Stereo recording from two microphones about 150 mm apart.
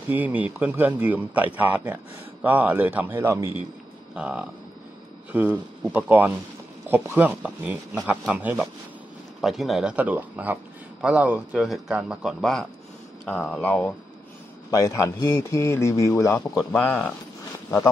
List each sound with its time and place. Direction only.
0.1 s speech: 10° right (ahead or behind); by 13.9 s 10° left (ahead or behind)
14.7 s a man's voice: 20° left (ahead or behind)